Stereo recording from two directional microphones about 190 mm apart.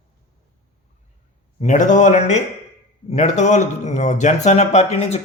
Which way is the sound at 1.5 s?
40° left (ahead or behind).